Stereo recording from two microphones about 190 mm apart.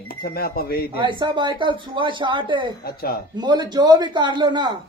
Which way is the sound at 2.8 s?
55° left (ahead or behind).